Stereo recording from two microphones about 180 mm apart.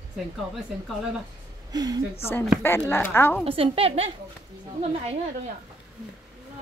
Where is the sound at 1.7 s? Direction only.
20° right (ahead or behind).